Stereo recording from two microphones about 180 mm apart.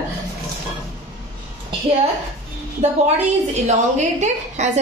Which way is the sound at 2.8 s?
40° right (ahead or behind).